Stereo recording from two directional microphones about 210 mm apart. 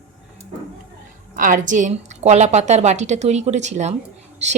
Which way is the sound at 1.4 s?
35° right (ahead or behind).